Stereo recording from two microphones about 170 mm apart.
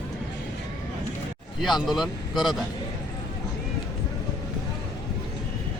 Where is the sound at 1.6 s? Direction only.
Centre (ahead or behind).